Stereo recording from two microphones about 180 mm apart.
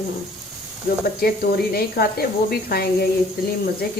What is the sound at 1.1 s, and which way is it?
A woman's voice, 60° left (ahead or behind).